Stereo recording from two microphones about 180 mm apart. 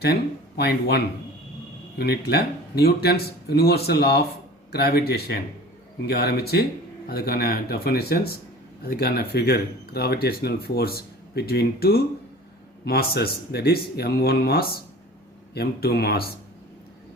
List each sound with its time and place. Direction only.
0.0 s speech: 60° left (ahead or behind)